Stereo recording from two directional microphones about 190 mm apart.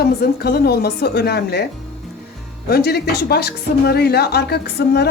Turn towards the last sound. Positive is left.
turn(degrees=60)  # may be behind; listen again after turning